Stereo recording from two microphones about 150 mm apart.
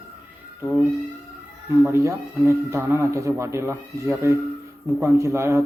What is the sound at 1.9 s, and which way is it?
Speech, 20° right (ahead or behind).